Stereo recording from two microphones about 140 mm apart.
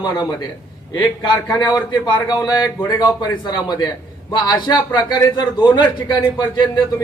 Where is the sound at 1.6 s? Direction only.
30° left (ahead or behind).